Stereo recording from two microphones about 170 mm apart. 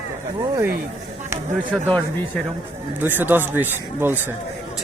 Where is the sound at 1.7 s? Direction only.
5° left (ahead or behind).